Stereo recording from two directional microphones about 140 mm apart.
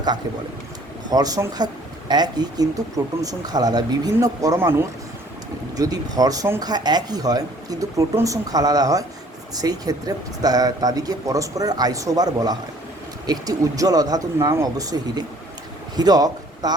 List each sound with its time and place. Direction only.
1.1 s speech: 25° right (ahead or behind)
5.7 s a man's voice: 25° right (ahead or behind)